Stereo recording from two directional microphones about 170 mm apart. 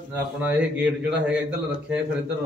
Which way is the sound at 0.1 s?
10° right (ahead or behind).